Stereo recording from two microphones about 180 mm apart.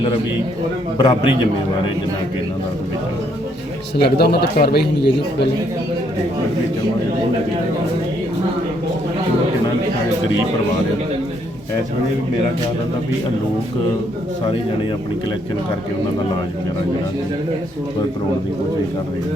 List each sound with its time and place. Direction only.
0.9 s a man's voice: 25° left (ahead or behind)
3.9 s a man's voice: 65° left (ahead or behind)